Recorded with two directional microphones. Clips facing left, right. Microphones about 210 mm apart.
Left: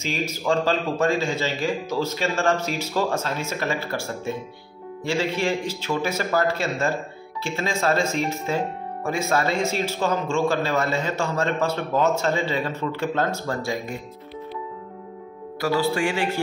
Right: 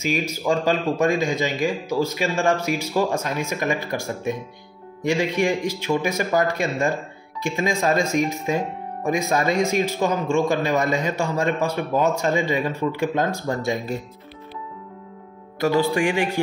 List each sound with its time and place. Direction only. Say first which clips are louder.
0.0 s speech: right 3 dB; 10° right (ahead or behind)
15.6 s speech: right 3 dB; 20° right (ahead or behind)